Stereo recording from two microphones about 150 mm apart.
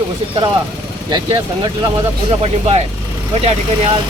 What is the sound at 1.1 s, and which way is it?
Speech, 30° right (ahead or behind).